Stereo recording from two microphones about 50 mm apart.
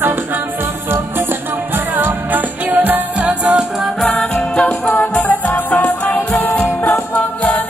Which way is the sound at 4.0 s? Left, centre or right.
Centre.